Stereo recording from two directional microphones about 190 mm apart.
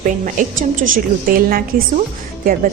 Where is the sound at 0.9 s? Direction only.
50° right (ahead or behind).